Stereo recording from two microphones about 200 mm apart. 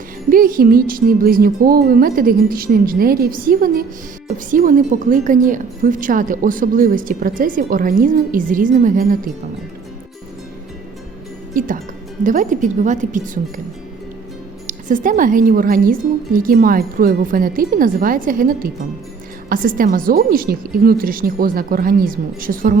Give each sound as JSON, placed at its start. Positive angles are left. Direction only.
{"t": 0.3, "sound": "a woman's voice", "side_deg": -45}
{"t": 11.5, "sound": "speech", "side_deg": -40}
{"t": 14.7, "sound": "a woman's voice", "side_deg": -40}